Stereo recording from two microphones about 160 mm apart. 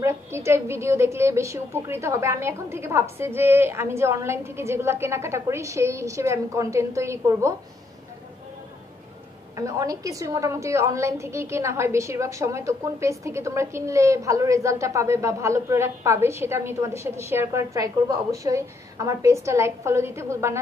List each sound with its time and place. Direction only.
0.0 s a woman's voice: 15° right (ahead or behind)
9.6 s a woman's voice: 20° right (ahead or behind)